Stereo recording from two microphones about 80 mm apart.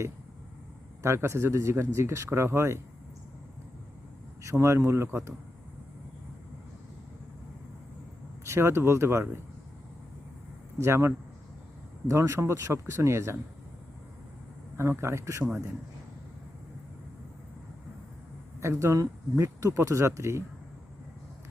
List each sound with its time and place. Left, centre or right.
1.0 s speech: right
4.4 s speech: right
8.4 s speech: right
10.8 s speech: right
14.8 s speech: right
18.6 s speech: right